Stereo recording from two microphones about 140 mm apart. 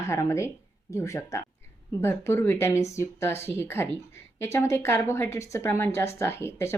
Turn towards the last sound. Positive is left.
turn(degrees=20)  # may be behind; listen again after turning